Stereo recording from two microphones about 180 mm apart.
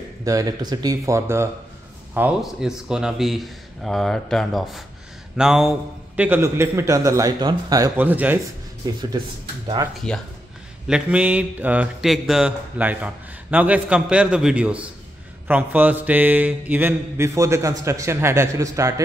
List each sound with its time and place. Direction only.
0.2 s speech: 20° right (ahead or behind)
8.0 s speech: 10° right (ahead or behind)
8.8 s speech: 25° right (ahead or behind)
10.0 s speech: 5° left (ahead or behind)
10.9 s speech: 5° right (ahead or behind)